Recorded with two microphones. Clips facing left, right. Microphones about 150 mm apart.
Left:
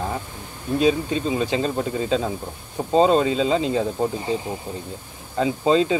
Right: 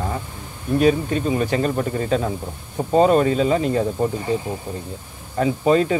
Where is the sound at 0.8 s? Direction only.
20° left (ahead or behind).